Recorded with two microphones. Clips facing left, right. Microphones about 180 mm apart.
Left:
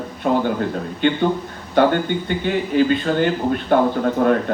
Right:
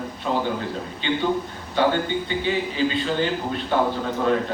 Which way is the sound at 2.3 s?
55° left (ahead or behind).